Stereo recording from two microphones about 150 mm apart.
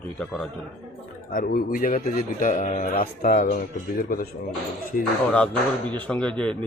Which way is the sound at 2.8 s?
75° left (ahead or behind).